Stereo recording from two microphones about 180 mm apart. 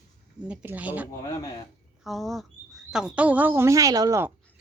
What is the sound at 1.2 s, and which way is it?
Speech, 20° left (ahead or behind).